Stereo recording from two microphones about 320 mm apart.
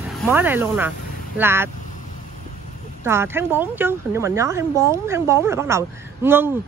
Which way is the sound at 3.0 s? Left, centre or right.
Centre.